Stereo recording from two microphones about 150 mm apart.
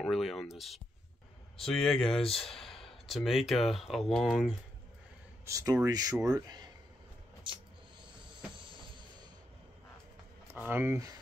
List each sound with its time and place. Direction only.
0.0 s speech: centre (ahead or behind)
5.4 s speech: 20° right (ahead or behind)
7.5 s a sound: 35° right (ahead or behind)
10.5 s speech: 15° right (ahead or behind)